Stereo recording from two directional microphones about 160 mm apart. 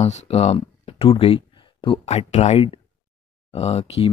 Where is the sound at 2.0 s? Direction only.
45° left (ahead or behind).